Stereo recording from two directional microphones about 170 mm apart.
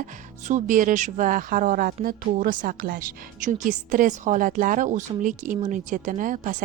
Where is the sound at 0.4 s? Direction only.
50° right (ahead or behind).